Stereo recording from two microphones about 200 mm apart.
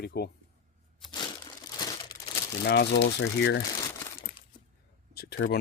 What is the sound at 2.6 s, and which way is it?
Speech, 55° left (ahead or behind).